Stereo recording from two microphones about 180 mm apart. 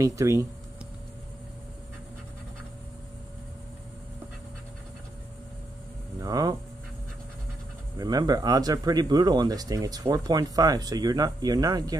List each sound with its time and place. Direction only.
0.0 s speech: 15° right (ahead or behind)
6.2 s a sound: 20° right (ahead or behind)
8.0 s speech: 20° right (ahead or behind)